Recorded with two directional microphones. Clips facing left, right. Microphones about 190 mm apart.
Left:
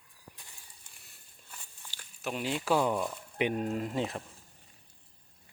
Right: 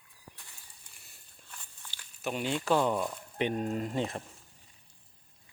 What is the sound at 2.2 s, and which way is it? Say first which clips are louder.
Speech: right 1 dB; centre (ahead or behind).